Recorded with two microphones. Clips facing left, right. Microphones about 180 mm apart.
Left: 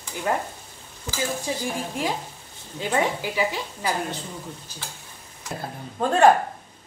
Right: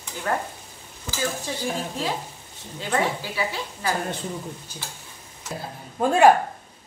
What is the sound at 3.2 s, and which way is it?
Speech, 15° left (ahead or behind).